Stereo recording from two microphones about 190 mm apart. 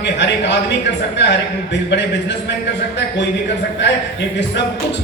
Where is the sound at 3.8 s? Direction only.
70° left (ahead or behind).